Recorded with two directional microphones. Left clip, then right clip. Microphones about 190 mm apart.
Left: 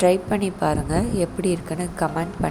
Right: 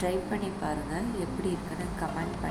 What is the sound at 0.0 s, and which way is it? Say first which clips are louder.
A woman's voice: left 12 dB; 50° left (ahead or behind).